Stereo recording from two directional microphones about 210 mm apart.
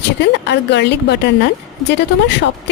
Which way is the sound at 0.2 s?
55° left (ahead or behind).